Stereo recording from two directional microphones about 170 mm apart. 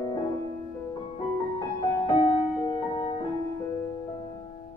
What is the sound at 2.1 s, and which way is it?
Music, 35° left (ahead or behind).